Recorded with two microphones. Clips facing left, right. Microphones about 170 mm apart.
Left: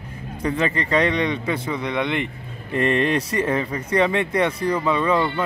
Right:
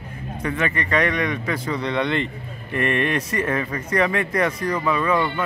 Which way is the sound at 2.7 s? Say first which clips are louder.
Left 2 dB; 30° left (ahead or behind).